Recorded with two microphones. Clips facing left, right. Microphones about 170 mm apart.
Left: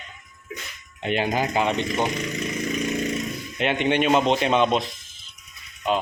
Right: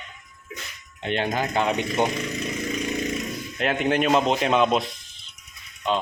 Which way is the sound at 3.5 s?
Centre (ahead or behind).